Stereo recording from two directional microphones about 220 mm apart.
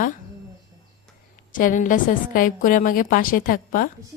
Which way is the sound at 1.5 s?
35° left (ahead or behind).